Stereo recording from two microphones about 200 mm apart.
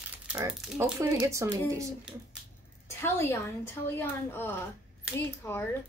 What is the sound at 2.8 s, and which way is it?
A woman's voice, 10° left (ahead or behind).